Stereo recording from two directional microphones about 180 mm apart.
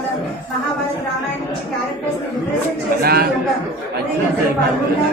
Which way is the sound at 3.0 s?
60° right (ahead or behind).